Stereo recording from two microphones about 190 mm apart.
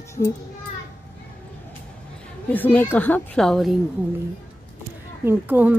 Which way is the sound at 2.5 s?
10° left (ahead or behind).